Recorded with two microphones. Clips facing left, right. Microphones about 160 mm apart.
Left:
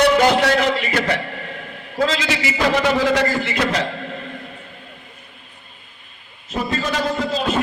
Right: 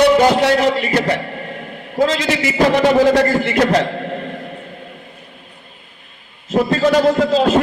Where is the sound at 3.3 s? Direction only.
55° right (ahead or behind).